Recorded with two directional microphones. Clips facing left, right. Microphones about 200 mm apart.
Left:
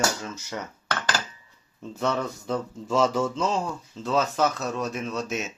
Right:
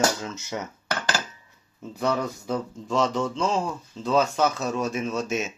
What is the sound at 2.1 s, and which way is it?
Speech, 5° right (ahead or behind).